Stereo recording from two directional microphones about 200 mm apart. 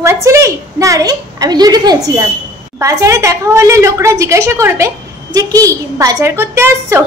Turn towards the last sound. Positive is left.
turn(degrees=-15)  # may be behind; listen again after turning